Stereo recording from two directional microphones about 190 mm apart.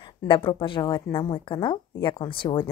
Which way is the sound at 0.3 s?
25° left (ahead or behind).